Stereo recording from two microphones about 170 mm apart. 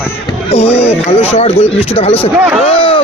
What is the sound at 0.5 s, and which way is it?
Speech, 40° left (ahead or behind).